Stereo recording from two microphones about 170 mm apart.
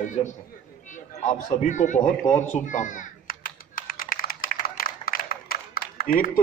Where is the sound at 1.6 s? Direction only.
45° left (ahead or behind).